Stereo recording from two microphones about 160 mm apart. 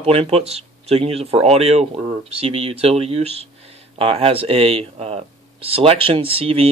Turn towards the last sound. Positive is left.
turn(degrees=-35)  # may be behind; listen again after turning